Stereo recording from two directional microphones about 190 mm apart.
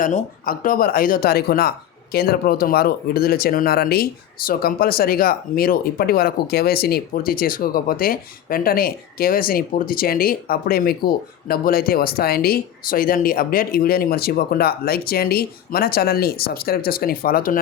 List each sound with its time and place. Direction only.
0.0 s speech: 45° left (ahead or behind)